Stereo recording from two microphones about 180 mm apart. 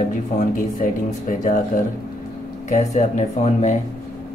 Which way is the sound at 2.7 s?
40° left (ahead or behind).